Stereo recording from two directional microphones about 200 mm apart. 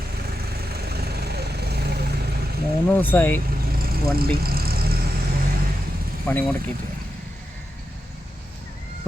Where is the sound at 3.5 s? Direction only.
50° right (ahead or behind).